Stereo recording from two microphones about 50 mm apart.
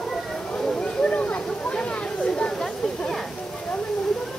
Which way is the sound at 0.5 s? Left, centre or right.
Centre.